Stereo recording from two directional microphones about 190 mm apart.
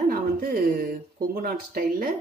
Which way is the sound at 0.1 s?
50° right (ahead or behind).